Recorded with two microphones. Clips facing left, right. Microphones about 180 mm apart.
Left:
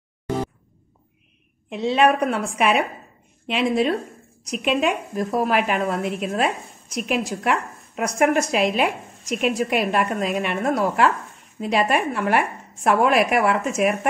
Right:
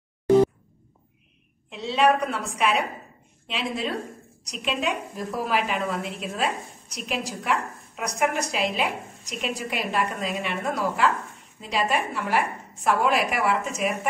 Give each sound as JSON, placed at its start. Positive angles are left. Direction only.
{"t": 1.7, "sound": "a woman's voice", "side_deg": 55}